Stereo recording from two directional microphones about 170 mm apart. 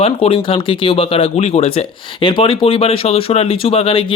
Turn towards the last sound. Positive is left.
turn(degrees=35)  # may be behind; listen again after turning